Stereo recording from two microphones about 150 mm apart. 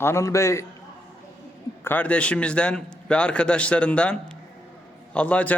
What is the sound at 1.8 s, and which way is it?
A man's voice, 10° left (ahead or behind).